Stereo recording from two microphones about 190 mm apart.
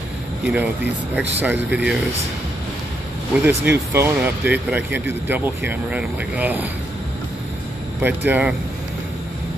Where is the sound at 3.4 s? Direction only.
10° right (ahead or behind).